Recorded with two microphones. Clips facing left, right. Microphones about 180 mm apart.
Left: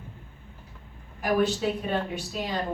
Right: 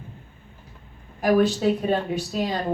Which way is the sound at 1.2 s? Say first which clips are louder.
Right 5 dB; 40° right (ahead or behind).